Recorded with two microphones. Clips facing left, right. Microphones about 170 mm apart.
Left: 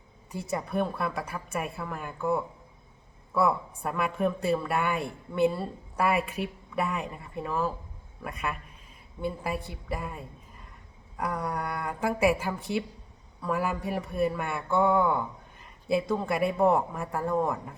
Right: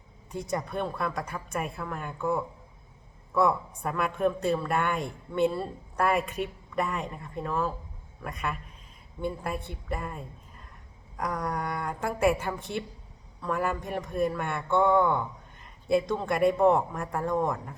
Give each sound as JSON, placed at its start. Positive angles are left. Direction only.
{"t": 0.3, "sound": "speech", "side_deg": 5}